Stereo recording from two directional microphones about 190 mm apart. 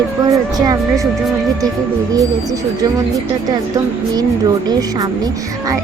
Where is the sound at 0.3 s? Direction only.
20° right (ahead or behind).